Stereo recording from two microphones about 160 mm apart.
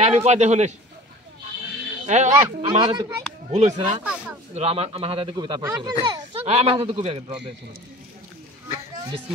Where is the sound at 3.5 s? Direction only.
45° right (ahead or behind).